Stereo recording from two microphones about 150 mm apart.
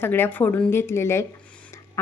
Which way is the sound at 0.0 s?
15° left (ahead or behind).